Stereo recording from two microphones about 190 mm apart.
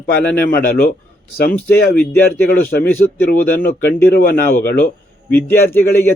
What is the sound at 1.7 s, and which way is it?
A man's voice, 55° left (ahead or behind).